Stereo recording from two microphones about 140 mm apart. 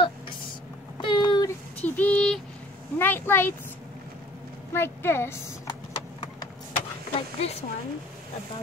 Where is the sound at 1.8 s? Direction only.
10° left (ahead or behind).